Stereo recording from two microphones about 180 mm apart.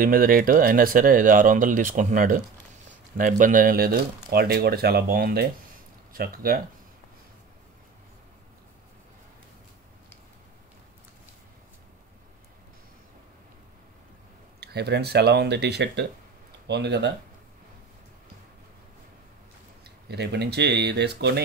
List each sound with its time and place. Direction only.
0.0 s speech: 50° right (ahead or behind)
14.6 s speech: 65° right (ahead or behind)
19.8 s speech: 65° right (ahead or behind)